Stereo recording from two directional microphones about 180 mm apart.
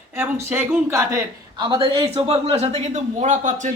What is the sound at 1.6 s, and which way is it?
A man's voice, 25° right (ahead or behind).